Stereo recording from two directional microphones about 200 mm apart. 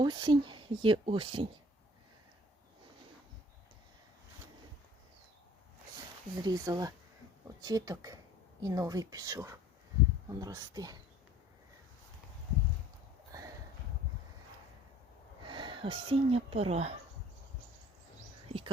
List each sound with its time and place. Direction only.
0.0 s speech: 20° right (ahead or behind)
6.3 s a woman's voice: 20° right (ahead or behind)
13.3 s a sound: 20° right (ahead or behind)
15.4 s speech: 25° right (ahead or behind)
18.4 s whispering: 30° right (ahead or behind)